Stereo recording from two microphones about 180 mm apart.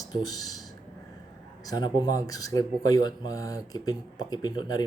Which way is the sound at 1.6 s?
25° left (ahead or behind).